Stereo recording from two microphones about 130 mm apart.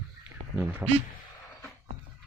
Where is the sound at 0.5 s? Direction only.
15° right (ahead or behind).